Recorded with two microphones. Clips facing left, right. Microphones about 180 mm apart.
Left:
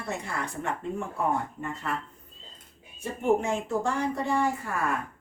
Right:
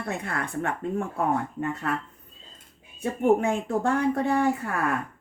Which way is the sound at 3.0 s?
60° right (ahead or behind).